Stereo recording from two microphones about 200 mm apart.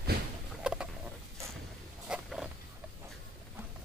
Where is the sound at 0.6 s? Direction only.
5° right (ahead or behind).